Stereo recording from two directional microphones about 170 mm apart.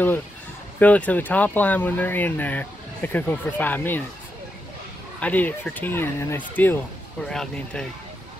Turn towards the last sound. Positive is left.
turn(degrees=5)  # may be behind; listen again after turning